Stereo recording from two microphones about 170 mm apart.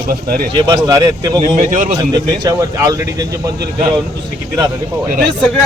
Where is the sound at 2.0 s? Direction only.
25° right (ahead or behind).